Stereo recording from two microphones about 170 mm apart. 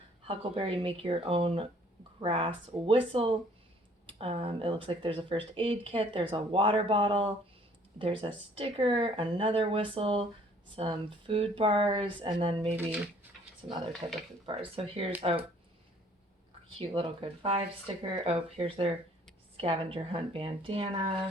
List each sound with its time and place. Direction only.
0.3 s speech: 30° right (ahead or behind)
14.0 s speech: 25° right (ahead or behind)
16.6 s speech: 30° right (ahead or behind)